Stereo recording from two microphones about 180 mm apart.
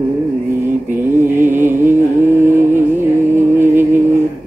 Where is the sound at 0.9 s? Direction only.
10° right (ahead or behind).